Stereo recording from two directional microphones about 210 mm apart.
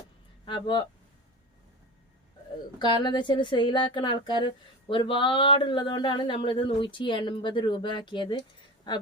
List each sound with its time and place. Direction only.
0.4 s speech: 20° left (ahead or behind)
2.7 s speech: 20° left (ahead or behind)